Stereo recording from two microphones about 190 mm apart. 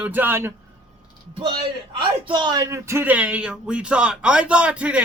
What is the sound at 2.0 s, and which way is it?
Speech, 25° right (ahead or behind).